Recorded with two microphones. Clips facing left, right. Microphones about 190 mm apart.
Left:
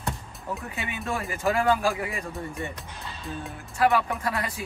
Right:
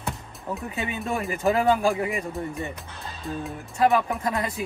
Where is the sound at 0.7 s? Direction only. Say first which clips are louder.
Right 4 dB; 20° right (ahead or behind).